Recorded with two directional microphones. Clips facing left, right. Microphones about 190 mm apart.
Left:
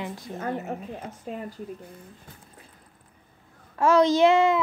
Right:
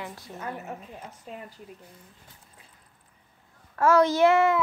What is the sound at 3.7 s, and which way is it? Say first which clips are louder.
Speech: left 1 dB; 15° left (ahead or behind).